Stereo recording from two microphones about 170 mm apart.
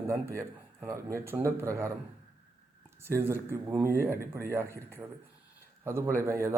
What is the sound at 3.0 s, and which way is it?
A man's voice, 15° right (ahead or behind).